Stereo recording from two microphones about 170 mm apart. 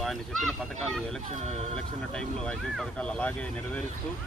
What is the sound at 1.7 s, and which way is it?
Speech, 5° left (ahead or behind).